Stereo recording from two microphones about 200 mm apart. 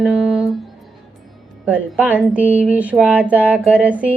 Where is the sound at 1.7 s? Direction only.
5° right (ahead or behind).